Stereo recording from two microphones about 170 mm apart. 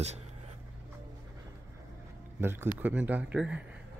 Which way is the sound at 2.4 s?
15° right (ahead or behind).